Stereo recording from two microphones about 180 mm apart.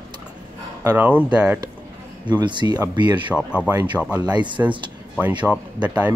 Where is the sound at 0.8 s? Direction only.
15° right (ahead or behind).